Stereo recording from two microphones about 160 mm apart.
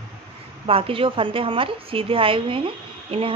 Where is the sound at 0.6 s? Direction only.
35° right (ahead or behind).